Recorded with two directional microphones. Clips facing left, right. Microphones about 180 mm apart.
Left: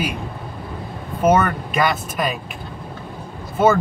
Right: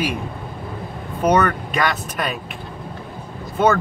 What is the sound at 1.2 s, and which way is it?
Speech, centre (ahead or behind).